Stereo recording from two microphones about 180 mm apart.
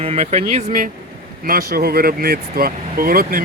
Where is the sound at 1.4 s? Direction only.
55° right (ahead or behind).